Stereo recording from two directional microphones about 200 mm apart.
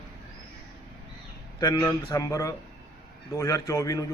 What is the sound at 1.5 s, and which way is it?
A man's voice, 20° left (ahead or behind).